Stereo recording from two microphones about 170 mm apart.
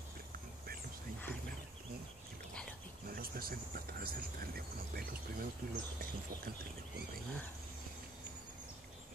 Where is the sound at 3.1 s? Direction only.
60° right (ahead or behind).